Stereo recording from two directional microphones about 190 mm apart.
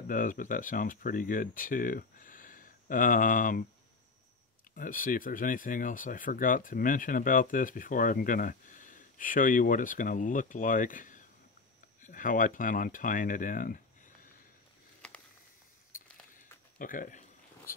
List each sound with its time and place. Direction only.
0.1 s speech: 45° left (ahead or behind)
4.7 s speech: 45° left (ahead or behind)
16.7 s a sound: 45° left (ahead or behind)